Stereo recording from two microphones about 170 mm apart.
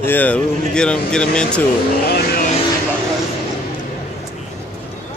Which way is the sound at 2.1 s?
65° left (ahead or behind).